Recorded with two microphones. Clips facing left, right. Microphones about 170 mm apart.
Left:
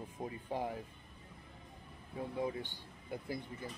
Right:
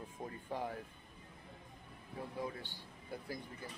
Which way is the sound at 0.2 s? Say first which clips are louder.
Left 3 dB; 15° left (ahead or behind).